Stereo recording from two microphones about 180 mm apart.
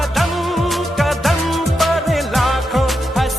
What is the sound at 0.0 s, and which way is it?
Music, centre (ahead or behind).